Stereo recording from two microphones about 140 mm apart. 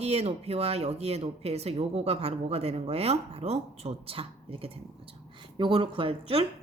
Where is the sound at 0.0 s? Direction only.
45° right (ahead or behind).